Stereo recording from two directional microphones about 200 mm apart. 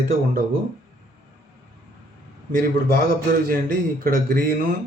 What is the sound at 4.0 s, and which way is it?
Speech, 50° right (ahead or behind).